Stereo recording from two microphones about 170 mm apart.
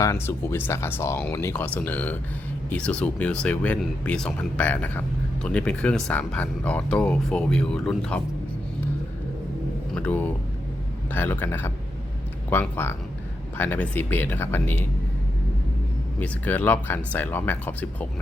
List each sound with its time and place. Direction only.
0.0 s speech: 15° left (ahead or behind)
9.9 s speech: 10° left (ahead or behind)
16.2 s speech: 10° left (ahead or behind)